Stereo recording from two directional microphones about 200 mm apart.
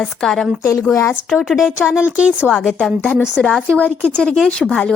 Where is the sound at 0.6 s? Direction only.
15° left (ahead or behind).